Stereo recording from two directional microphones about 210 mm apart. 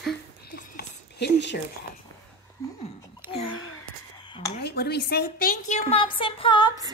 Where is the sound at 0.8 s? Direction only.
55° left (ahead or behind).